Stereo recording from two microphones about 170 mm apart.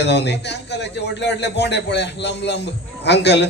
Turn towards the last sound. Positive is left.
turn(degrees=90)